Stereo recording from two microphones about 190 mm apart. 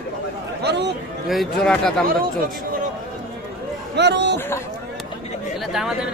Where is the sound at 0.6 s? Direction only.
60° right (ahead or behind).